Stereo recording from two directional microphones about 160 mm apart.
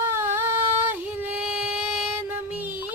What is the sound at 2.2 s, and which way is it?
Music, 10° right (ahead or behind).